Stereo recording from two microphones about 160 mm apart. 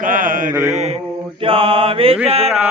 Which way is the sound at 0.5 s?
15° right (ahead or behind).